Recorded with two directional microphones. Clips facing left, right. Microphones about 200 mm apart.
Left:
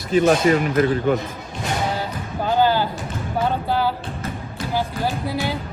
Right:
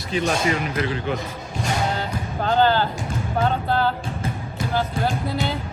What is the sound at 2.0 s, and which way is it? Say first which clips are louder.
Music: even; 10° left (ahead or behind).